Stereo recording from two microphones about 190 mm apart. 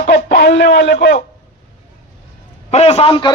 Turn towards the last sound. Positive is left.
turn(degrees=25)  # may be behind; listen again after turning